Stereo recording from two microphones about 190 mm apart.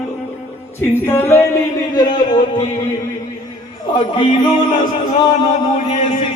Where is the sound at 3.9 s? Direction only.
25° left (ahead or behind).